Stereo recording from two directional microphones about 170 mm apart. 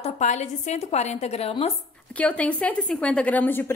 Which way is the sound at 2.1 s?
10° left (ahead or behind).